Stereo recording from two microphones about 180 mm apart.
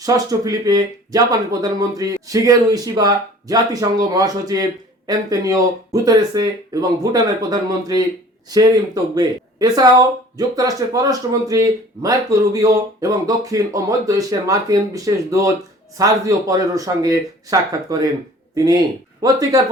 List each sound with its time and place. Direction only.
0.0 s speech: 20° right (ahead or behind)
9.1 s speech: 20° right (ahead or behind)